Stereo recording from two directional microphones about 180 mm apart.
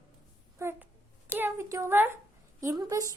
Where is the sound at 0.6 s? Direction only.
15° right (ahead or behind).